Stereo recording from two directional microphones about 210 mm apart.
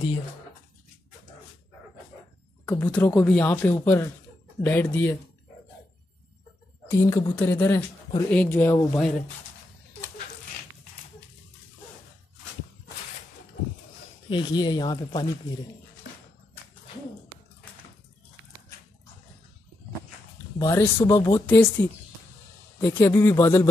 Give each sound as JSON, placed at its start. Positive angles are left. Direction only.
{"t": 2.6, "sound": "speech", "side_deg": 10}
{"t": 6.9, "sound": "speech", "side_deg": 15}
{"t": 14.3, "sound": "speech", "side_deg": 20}
{"t": 20.5, "sound": "speech", "side_deg": 15}